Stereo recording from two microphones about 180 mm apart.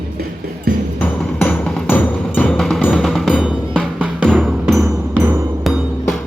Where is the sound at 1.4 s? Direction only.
10° left (ahead or behind).